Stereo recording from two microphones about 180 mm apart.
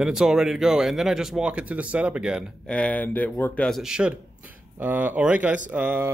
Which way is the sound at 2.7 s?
5° left (ahead or behind).